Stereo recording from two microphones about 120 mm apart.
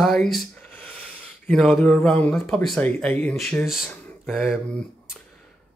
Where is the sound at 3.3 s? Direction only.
Centre (ahead or behind).